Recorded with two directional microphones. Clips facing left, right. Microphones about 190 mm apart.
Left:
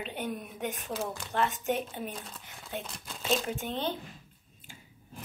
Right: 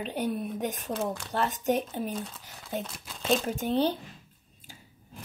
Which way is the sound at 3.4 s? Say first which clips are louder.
Right 7 dB; 40° right (ahead or behind).